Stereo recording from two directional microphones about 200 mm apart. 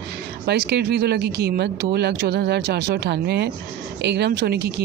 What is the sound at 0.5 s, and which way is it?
Speech, 55° right (ahead or behind).